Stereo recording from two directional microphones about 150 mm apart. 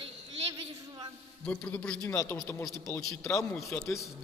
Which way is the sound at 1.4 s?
10° left (ahead or behind).